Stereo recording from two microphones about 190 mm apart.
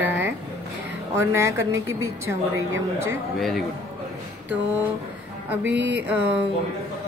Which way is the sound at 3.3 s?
Centre (ahead or behind).